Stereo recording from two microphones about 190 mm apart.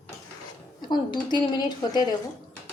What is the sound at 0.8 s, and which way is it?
Speech, 25° left (ahead or behind).